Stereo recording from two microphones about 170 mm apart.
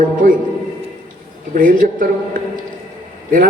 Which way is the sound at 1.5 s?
55° right (ahead or behind).